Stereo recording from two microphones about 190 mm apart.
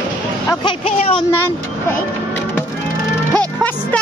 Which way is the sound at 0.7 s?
30° left (ahead or behind).